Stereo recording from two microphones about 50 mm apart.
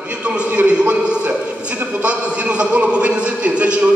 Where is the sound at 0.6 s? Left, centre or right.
Right.